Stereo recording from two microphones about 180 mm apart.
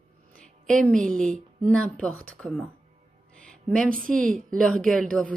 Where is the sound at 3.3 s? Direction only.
5° left (ahead or behind).